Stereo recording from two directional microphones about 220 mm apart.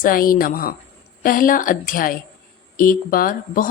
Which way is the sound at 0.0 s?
40° left (ahead or behind).